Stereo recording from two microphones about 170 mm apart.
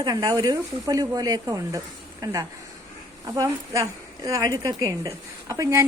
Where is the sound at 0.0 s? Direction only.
25° right (ahead or behind).